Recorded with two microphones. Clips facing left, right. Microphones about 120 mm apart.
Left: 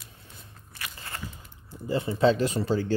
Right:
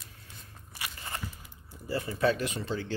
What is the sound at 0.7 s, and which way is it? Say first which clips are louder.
Biting: even; 20° right (ahead or behind).